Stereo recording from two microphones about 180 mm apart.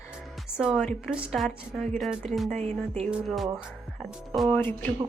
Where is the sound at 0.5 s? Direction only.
5° right (ahead or behind).